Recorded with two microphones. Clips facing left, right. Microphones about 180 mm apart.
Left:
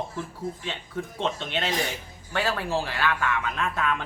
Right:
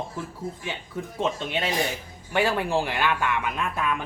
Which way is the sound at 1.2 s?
10° right (ahead or behind).